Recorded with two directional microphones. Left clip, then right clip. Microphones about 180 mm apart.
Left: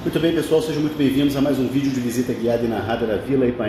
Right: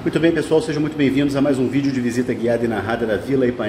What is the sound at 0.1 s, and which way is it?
Speech, 25° right (ahead or behind).